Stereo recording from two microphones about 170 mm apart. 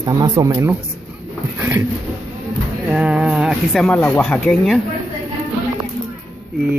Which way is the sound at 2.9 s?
5° right (ahead or behind).